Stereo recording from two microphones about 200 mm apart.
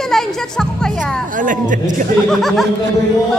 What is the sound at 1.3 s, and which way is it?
Speech, 40° right (ahead or behind).